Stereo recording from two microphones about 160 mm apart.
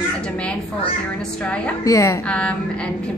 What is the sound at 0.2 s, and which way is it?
Speech, 5° left (ahead or behind).